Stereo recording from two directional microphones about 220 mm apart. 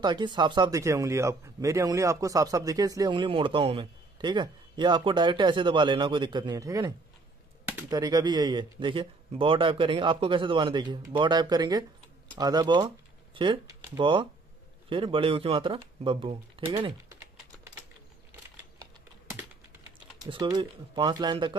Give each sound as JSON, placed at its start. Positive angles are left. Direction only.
{"t": 0.0, "sound": "speech", "side_deg": -20}
{"t": 20.2, "sound": "speech", "side_deg": -20}